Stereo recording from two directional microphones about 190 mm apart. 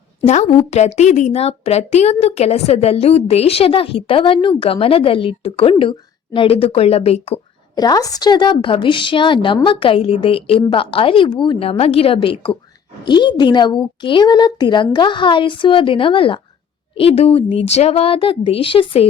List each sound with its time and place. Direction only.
0.3 s a woman's voice: 35° left (ahead or behind)
7.8 s a woman's voice: 20° left (ahead or behind)